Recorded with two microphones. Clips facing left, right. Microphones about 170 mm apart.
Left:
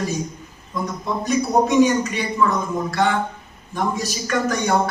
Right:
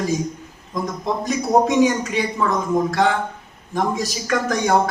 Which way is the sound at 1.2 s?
90° right.